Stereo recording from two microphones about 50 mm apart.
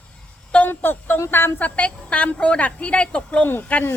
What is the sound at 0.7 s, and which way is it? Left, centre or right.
Speech, left.